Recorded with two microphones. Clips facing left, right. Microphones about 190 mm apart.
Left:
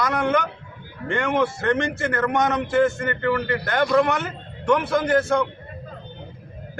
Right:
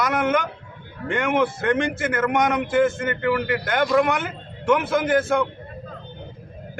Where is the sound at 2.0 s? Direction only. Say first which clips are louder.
Even; 5° right (ahead or behind).